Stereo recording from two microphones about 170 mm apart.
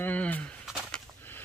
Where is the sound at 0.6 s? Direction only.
Centre (ahead or behind).